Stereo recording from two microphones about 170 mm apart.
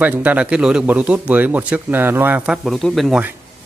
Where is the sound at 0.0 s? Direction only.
10° right (ahead or behind).